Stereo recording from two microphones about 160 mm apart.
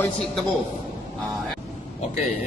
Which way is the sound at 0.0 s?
Centre (ahead or behind).